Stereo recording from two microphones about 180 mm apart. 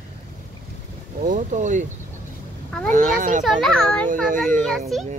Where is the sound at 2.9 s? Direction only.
45° right (ahead or behind).